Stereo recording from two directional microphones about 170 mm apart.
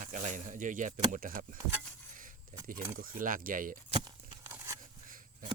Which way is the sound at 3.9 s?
30° right (ahead or behind).